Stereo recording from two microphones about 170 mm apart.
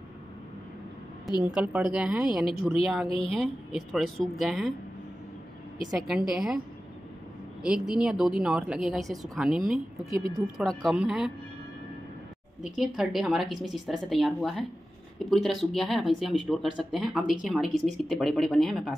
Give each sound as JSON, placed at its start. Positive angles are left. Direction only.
{"t": 1.5, "sound": "speech", "side_deg": -5}
{"t": 3.1, "sound": "a woman's voice", "side_deg": 35}
{"t": 3.3, "sound": "speech", "side_deg": 0}
{"t": 5.9, "sound": "speech", "side_deg": -5}
{"t": 7.6, "sound": "speech", "side_deg": -5}
{"t": 12.6, "sound": "speech", "side_deg": -5}